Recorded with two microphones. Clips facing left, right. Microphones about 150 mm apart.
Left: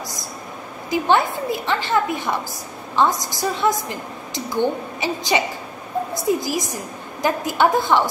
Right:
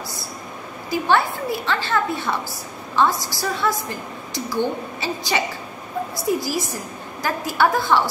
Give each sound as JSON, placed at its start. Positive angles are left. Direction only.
{"t": 0.8, "sound": "a woman's voice", "side_deg": 20}